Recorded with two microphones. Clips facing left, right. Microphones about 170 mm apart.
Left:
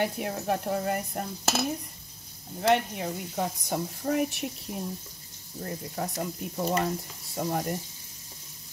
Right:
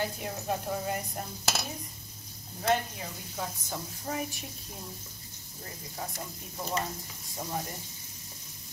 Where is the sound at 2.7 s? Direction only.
65° left (ahead or behind).